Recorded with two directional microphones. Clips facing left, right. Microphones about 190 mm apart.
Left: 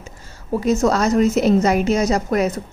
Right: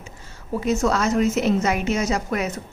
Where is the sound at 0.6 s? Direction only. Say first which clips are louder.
Left 4 dB; 40° left (ahead or behind).